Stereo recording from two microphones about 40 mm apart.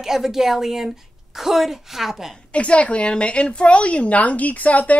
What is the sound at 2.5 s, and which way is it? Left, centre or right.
A woman's voice, left.